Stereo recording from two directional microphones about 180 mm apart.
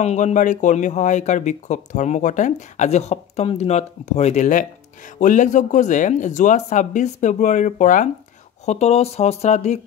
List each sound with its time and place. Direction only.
0.0 s speech: 40° left (ahead or behind)